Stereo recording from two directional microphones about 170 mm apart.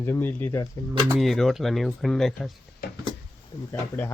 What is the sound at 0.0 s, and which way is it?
Speech, 15° left (ahead or behind).